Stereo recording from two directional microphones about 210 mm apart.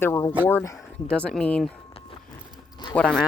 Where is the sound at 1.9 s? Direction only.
25° left (ahead or behind).